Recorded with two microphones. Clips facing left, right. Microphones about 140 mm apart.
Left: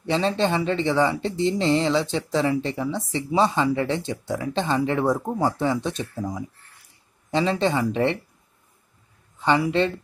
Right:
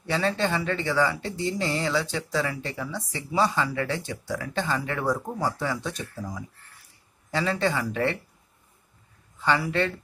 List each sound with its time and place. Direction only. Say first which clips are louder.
0.0 s speech: left 4 dB; 20° left (ahead or behind)
9.4 s speech: left 4 dB; 20° left (ahead or behind)